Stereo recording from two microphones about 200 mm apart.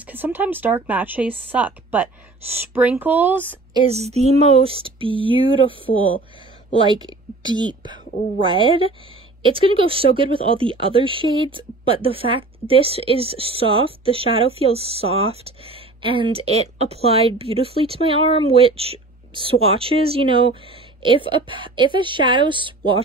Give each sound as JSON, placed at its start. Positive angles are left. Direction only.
{"t": 0.0, "sound": "speech", "side_deg": -10}
{"t": 3.7, "sound": "a woman's voice", "side_deg": -30}